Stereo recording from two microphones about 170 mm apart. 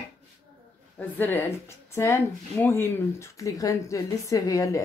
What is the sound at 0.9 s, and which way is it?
Speech, 10° left (ahead or behind).